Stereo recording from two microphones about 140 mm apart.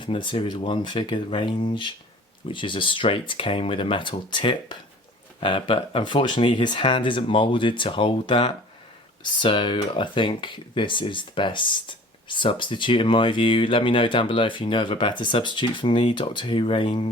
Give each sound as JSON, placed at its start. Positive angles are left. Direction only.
{"t": 0.0, "sound": "speech", "side_deg": 35}